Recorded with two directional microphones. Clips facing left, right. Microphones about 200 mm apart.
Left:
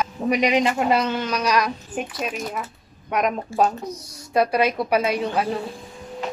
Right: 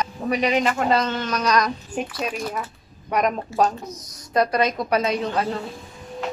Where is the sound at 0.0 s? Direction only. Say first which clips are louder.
Left 2 dB; 15° left (ahead or behind).